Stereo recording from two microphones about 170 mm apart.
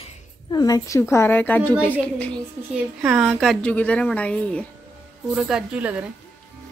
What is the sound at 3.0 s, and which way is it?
A woman's voice, 5° right (ahead or behind).